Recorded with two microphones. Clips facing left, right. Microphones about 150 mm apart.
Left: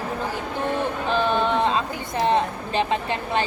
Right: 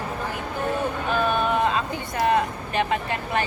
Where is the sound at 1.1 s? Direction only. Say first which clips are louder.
Left 1 dB; 25° left (ahead or behind).